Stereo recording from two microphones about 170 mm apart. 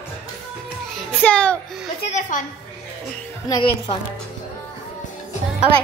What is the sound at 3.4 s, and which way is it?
Speech, 25° left (ahead or behind).